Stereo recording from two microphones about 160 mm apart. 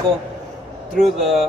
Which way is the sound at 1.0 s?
Centre (ahead or behind).